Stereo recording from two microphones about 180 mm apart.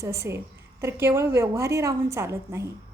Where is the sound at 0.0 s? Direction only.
15° right (ahead or behind).